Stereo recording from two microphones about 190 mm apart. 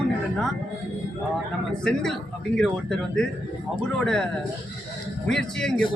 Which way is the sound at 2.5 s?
5° left (ahead or behind).